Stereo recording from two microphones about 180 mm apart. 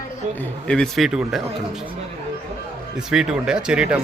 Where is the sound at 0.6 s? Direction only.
5° left (ahead or behind).